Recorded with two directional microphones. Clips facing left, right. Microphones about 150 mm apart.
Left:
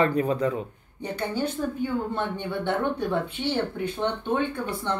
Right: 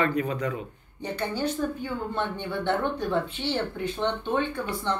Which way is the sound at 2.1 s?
10° left (ahead or behind).